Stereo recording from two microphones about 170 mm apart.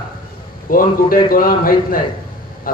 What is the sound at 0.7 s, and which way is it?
Speech, 55° left (ahead or behind).